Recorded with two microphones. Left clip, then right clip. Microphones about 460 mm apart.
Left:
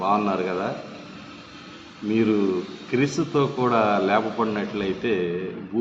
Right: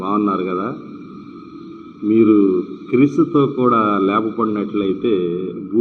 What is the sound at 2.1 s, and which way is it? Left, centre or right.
A man's voice, left.